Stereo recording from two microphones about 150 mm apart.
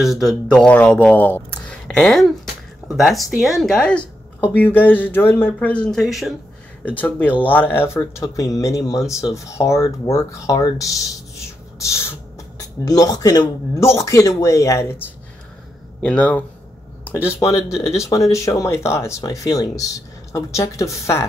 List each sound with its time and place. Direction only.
0.0 s a woman's voice: centre (ahead or behind)
6.8 s a woman's voice: 10° left (ahead or behind)
7.9 s speech: 25° left (ahead or behind)
11.8 s a sound: 20° left (ahead or behind)
12.5 s speech: 25° left (ahead or behind)
16.0 s a woman's voice: 5° left (ahead or behind)
17.0 s a sound: 15° left (ahead or behind)
17.4 s speech: 20° left (ahead or behind)